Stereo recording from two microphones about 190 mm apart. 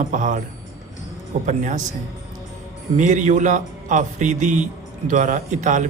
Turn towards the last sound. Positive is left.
turn(degrees=-40)  # may be behind; listen again after turning